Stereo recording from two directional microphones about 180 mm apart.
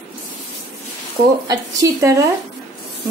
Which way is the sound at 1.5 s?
20° right (ahead or behind).